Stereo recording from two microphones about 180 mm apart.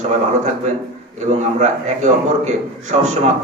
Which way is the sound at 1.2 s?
40° right (ahead or behind).